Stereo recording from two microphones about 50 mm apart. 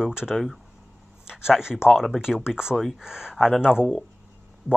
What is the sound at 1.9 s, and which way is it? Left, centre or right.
Speech, centre.